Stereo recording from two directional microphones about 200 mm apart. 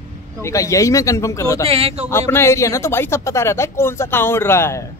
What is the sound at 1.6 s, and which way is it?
Speech, 30° right (ahead or behind).